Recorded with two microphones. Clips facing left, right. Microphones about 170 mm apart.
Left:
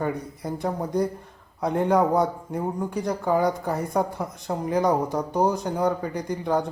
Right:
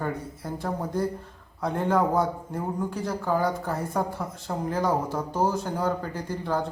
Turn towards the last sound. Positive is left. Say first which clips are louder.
# left 4 dB
turn(degrees=15)  # may be behind; listen again after turning